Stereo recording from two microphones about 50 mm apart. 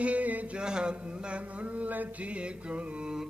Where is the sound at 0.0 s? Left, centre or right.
Right.